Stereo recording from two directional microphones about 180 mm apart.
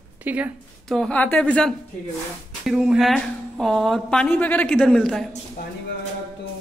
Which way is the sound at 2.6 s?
5° right (ahead or behind).